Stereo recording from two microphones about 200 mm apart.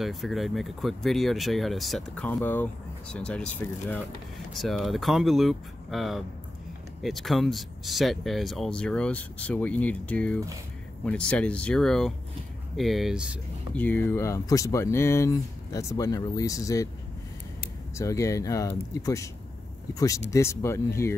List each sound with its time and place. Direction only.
0.0 s speech: centre (ahead or behind)
13.7 s speech: 10° left (ahead or behind)
17.9 s speech: 15° left (ahead or behind)